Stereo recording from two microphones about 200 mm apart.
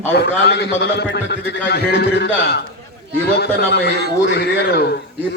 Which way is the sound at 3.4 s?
55° left (ahead or behind).